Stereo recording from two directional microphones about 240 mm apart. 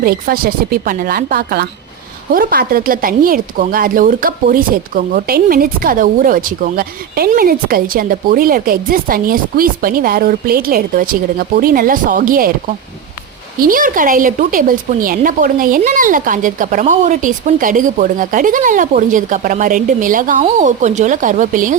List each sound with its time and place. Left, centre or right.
0.0 s a woman's voice: right
13.6 s a woman's voice: right